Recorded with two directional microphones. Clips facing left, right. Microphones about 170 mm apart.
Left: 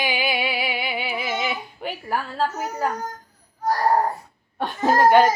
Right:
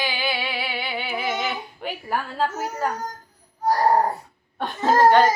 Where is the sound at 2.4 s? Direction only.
Centre (ahead or behind).